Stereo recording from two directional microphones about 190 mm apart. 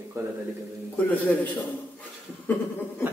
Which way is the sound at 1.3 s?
10° left (ahead or behind).